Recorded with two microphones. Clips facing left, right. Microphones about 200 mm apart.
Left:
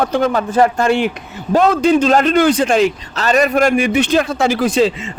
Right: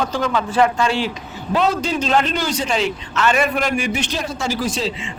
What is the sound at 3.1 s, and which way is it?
Speech, 40° left (ahead or behind).